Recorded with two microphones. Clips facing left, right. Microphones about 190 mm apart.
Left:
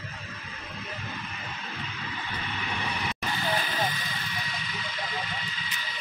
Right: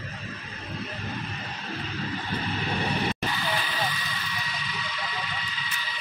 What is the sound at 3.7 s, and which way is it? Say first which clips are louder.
Vehicle: left 1 dB; 45° left (ahead or behind).